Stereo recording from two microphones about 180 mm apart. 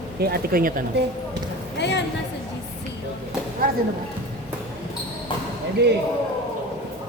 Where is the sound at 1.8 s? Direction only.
70° left (ahead or behind).